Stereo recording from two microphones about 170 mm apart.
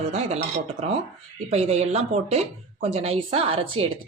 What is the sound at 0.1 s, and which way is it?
A woman's voice, 40° right (ahead or behind).